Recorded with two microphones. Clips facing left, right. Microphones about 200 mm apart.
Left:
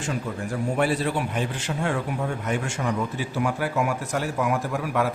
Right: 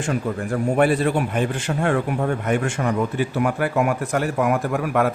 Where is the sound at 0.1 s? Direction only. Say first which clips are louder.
Right 5 dB; 55° right (ahead or behind).